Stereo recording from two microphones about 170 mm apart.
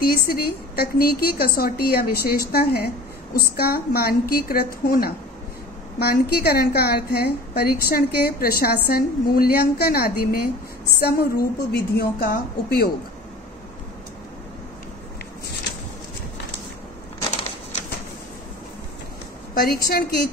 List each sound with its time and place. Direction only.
0.0 s a woman's voice: 60° left (ahead or behind)
19.5 s a woman's voice: 65° left (ahead or behind)